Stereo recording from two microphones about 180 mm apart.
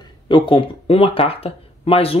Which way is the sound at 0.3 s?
30° left (ahead or behind).